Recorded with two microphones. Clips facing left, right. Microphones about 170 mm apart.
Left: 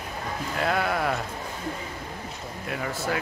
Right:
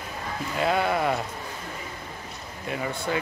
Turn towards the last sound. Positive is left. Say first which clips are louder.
# even
turn(degrees=0)  # may be behind; listen again after turning